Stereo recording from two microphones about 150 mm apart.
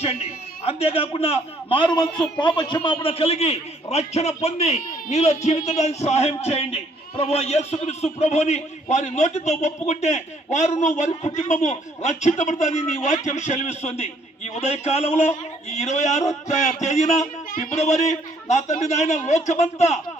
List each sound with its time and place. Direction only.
0.0 s a man's voice: 45° left (ahead or behind)